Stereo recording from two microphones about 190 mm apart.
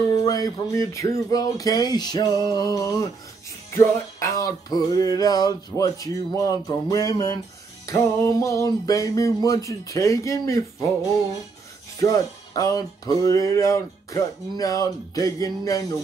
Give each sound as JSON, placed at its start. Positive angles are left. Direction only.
{"t": 0.2, "sound": "music", "side_deg": 20}